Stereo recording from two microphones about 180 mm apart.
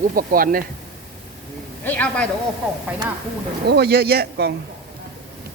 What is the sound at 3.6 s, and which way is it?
Speech, 65° right (ahead or behind).